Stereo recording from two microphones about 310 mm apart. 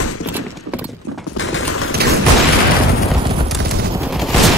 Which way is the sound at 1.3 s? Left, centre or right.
Left.